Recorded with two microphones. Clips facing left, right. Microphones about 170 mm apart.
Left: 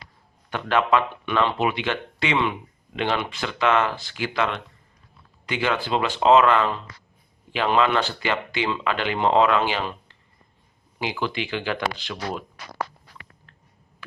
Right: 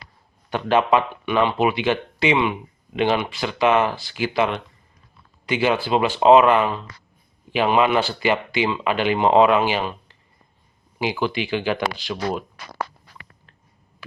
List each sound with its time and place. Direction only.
0.5 s speech: 20° right (ahead or behind)
11.0 s speech: 15° right (ahead or behind)